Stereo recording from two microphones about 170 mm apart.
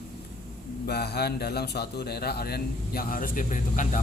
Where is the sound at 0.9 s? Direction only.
70° left (ahead or behind).